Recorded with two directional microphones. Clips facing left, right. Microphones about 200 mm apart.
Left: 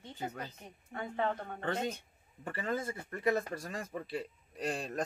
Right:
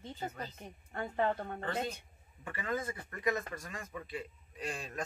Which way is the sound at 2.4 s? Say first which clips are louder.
Left 1 dB; 30° left (ahead or behind).